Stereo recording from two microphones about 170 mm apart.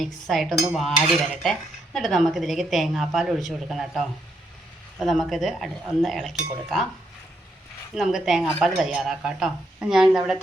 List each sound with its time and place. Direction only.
0.0 s cutlery: centre (ahead or behind)
7.9 s cutlery: centre (ahead or behind)